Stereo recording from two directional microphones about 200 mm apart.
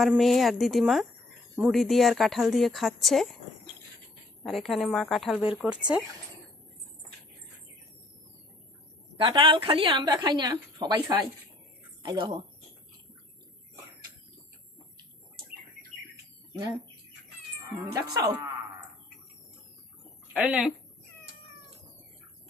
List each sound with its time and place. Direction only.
0.0 s speech: centre (ahead or behind)
4.4 s speech: centre (ahead or behind)
9.1 s a woman's voice: 25° right (ahead or behind)
12.0 s a woman's voice: 20° right (ahead or behind)
17.9 s speech: 15° right (ahead or behind)
20.3 s speech: 5° right (ahead or behind)